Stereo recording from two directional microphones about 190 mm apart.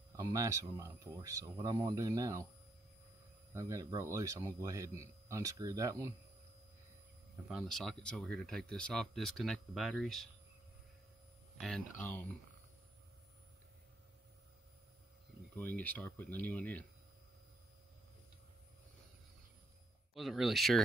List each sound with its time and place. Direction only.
0.1 s a man's voice: 15° right (ahead or behind)
3.5 s a man's voice: 15° right (ahead or behind)
7.4 s speech: centre (ahead or behind)
11.6 s speech: 5° left (ahead or behind)
15.5 s speech: 10° left (ahead or behind)
20.2 s speech: centre (ahead or behind)